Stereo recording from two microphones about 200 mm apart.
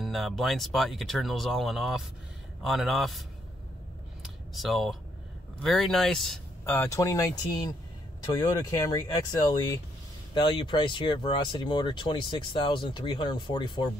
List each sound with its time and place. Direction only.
0.0 s speech: centre (ahead or behind)
4.2 s a sound: centre (ahead or behind)
5.6 s speech: centre (ahead or behind); by 13.8 s 25° left (ahead or behind)